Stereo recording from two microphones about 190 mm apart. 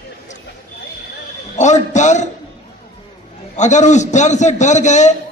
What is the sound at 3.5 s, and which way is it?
A man's voice, 40° left (ahead or behind).